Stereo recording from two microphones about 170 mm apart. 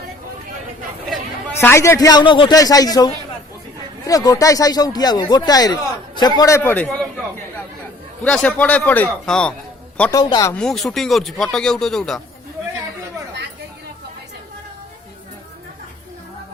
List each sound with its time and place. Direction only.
1.5 s speech: 15° left (ahead or behind)
6.6 s a man's voice: 10° left (ahead or behind)
10.1 s speech: 25° left (ahead or behind)
10.6 s speech: centre (ahead or behind)